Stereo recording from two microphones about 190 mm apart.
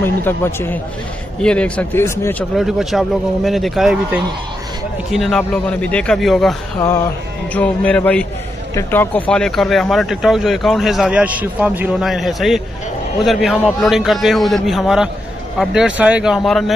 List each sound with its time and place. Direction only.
0.0 s speech: 10° left (ahead or behind)
2.5 s speech: centre (ahead or behind)
7.5 s speech: 5° left (ahead or behind)